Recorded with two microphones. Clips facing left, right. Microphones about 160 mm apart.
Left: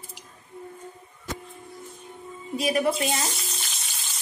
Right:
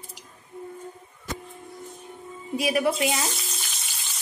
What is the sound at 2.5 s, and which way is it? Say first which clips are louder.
Speech: even; 10° right (ahead or behind).